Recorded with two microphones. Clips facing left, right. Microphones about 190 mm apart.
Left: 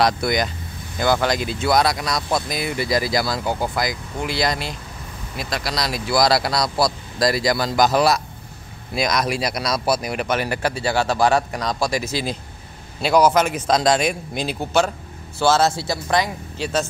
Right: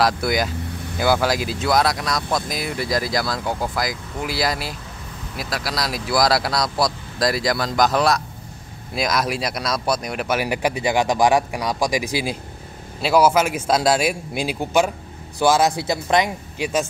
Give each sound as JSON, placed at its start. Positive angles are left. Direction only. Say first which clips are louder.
{"t": 0.0, "sound": "speech", "louder": "even", "side_deg": -5}